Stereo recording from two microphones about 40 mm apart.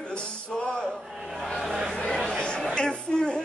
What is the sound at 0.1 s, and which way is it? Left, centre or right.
Music, left.